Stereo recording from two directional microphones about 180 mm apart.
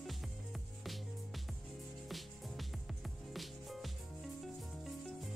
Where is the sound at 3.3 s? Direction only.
Centre (ahead or behind).